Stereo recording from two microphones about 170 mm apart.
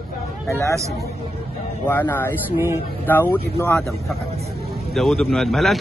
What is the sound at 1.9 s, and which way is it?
Speech, 10° left (ahead or behind).